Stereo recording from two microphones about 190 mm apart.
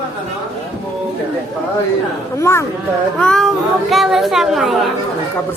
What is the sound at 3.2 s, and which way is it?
Speech, 5° left (ahead or behind).